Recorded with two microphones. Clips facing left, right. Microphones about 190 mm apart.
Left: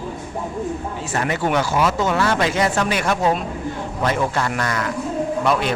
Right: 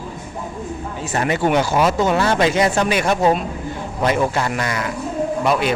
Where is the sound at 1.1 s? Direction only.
20° right (ahead or behind).